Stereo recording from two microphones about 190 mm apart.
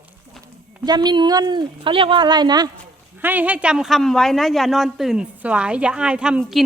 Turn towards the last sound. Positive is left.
turn(degrees=-5)  # may be behind; listen again after turning